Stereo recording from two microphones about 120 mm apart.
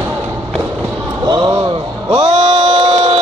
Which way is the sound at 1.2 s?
40° right (ahead or behind).